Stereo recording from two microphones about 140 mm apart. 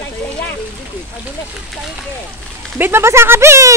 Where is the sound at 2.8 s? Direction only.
15° right (ahead or behind).